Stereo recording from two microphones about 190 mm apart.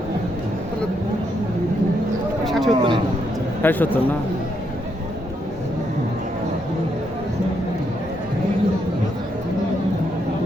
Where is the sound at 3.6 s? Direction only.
10° left (ahead or behind).